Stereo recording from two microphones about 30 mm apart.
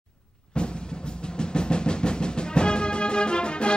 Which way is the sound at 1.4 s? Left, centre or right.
Left.